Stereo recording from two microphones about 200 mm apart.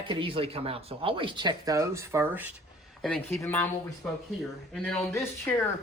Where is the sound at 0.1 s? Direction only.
25° right (ahead or behind); by 2.5 s 10° right (ahead or behind).